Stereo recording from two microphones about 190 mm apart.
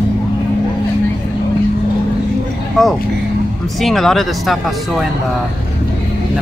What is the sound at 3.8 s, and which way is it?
Speech, centre (ahead or behind).